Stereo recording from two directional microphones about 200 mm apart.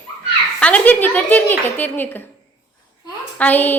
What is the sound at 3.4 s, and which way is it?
Speech, 10° left (ahead or behind).